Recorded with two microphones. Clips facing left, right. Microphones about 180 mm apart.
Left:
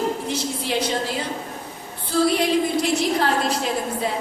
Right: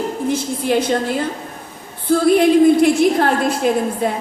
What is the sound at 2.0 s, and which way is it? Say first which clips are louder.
A woman's voice: right 7 dB; 55° right (ahead or behind).